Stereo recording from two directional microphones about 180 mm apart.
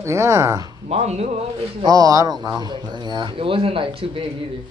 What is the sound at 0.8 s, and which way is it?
A man's voice, 35° right (ahead or behind).